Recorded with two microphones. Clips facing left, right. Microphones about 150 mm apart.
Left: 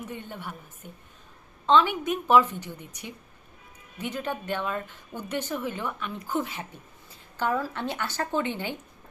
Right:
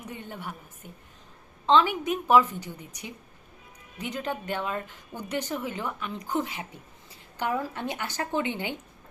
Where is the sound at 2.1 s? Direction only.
10° right (ahead or behind).